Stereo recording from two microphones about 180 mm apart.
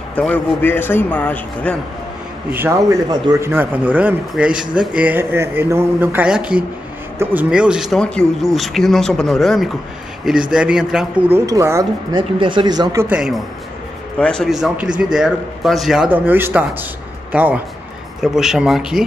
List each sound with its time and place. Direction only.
0.1 s a man's voice: 10° left (ahead or behind)
2.5 s a man's voice: 15° right (ahead or behind)
13.1 s a man's voice: 5° right (ahead or behind)